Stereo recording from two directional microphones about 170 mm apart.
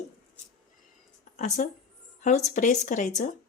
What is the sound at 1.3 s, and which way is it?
A woman's voice, 45° left (ahead or behind).